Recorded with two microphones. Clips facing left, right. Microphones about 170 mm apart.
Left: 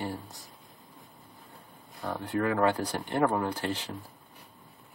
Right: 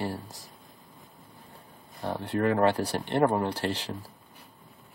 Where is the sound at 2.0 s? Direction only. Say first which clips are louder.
Right 2 dB; 30° right (ahead or behind).